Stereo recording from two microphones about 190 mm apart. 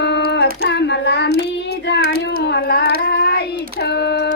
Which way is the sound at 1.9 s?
65° left (ahead or behind).